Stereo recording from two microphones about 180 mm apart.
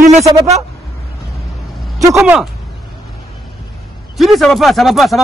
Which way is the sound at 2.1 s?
5° right (ahead or behind).